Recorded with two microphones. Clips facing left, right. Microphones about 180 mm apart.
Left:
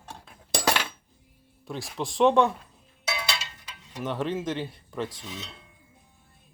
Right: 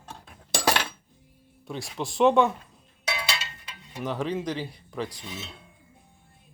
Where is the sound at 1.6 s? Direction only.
Centre (ahead or behind).